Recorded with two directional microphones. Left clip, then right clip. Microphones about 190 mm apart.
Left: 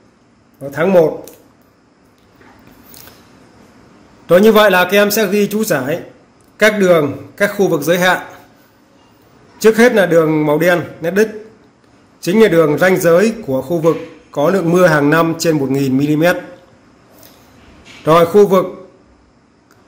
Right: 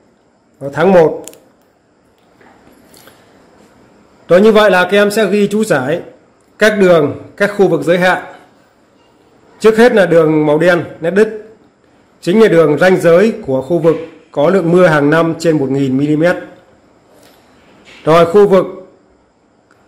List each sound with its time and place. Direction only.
0.7 s a man's voice: 15° right (ahead or behind)
4.3 s a man's voice: 5° right (ahead or behind)
9.6 s a man's voice: 10° right (ahead or behind)
18.0 s a man's voice: 10° right (ahead or behind)